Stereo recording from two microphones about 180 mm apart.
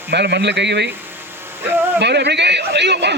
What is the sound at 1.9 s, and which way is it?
A man's voice, 70° right (ahead or behind).